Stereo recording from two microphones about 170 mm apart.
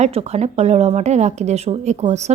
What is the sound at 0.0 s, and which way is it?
A woman's voice, 40° right (ahead or behind).